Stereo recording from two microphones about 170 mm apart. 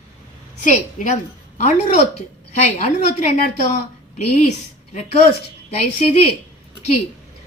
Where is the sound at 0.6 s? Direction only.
50° left (ahead or behind).